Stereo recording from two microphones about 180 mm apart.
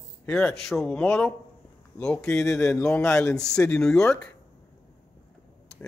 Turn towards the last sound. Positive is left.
turn(degrees=5)  # may be behind; listen again after turning